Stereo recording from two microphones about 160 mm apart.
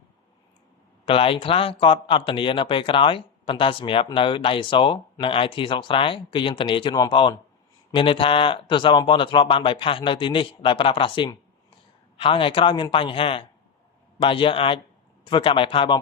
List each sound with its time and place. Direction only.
1.0 s a man's voice: 35° left (ahead or behind)